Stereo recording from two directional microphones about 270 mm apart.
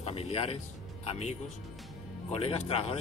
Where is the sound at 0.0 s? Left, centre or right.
Left.